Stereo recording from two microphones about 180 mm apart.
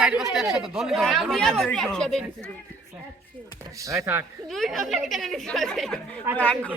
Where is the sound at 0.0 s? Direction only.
5° right (ahead or behind).